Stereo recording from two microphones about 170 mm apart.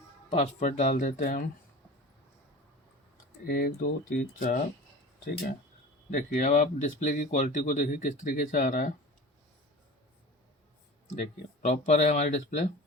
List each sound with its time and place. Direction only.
0.3 s speech: 45° left (ahead or behind)
3.4 s speech: 55° left (ahead or behind)
6.1 s speech: 50° left (ahead or behind)
11.6 s speech: 40° left (ahead or behind)